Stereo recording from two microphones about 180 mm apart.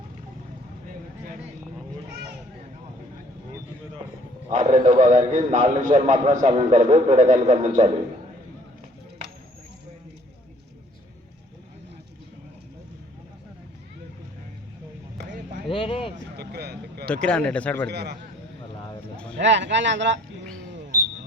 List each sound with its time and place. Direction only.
4.4 s a man's voice: 40° right (ahead or behind)
15.7 s a sound: 30° left (ahead or behind)
16.4 s vehicle: 65° right (ahead or behind)
17.1 s speech: 5° left (ahead or behind)
17.8 s a man's voice: 65° right (ahead or behind)
19.1 s a sound: 5° left (ahead or behind)
19.4 s speech: 80° right